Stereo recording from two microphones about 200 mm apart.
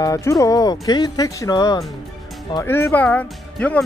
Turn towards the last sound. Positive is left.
turn(degrees=5)  # may be behind; listen again after turning